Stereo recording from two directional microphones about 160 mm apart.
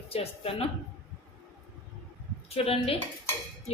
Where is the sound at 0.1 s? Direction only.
35° left (ahead or behind).